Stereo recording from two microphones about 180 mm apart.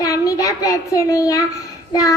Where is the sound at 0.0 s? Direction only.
20° left (ahead or behind).